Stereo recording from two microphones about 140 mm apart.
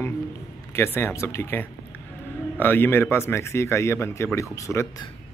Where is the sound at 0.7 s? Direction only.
15° left (ahead or behind).